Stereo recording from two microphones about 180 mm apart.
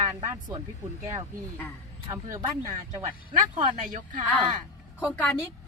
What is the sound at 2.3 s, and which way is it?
Speech, 20° right (ahead or behind).